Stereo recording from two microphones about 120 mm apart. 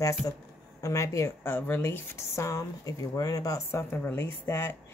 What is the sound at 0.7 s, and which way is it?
Speech, 25° left (ahead or behind).